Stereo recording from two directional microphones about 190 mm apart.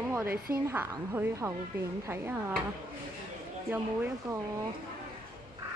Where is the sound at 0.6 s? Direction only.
10° right (ahead or behind).